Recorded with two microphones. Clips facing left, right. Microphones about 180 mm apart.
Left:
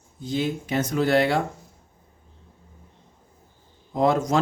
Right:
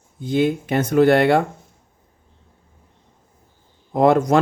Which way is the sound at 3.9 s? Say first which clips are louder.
Right 6 dB; 60° right (ahead or behind).